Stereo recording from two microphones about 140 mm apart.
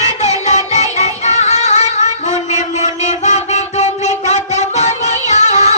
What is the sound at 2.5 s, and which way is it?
Mantra, 55° left (ahead or behind).